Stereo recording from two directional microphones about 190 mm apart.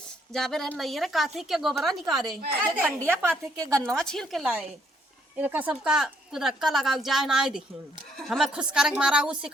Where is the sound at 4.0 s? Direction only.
Centre (ahead or behind).